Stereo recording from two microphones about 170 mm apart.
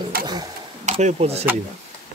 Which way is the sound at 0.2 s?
25° right (ahead or behind).